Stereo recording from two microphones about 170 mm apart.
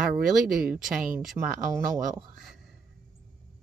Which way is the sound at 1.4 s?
25° right (ahead or behind).